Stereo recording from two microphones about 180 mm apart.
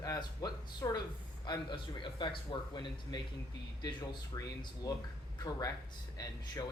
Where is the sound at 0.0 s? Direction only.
20° left (ahead or behind).